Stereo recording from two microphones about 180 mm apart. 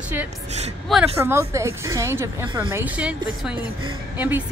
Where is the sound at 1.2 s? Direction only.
15° right (ahead or behind).